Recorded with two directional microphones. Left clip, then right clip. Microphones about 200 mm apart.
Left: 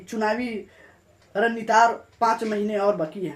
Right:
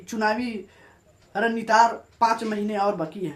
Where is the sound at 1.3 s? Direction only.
15° right (ahead or behind).